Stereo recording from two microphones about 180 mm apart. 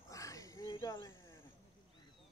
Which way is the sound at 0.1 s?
20° left (ahead or behind).